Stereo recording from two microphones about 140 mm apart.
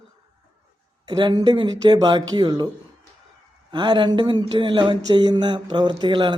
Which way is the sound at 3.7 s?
35° right (ahead or behind).